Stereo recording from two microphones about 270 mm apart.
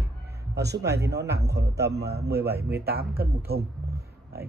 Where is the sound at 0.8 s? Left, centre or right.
Right.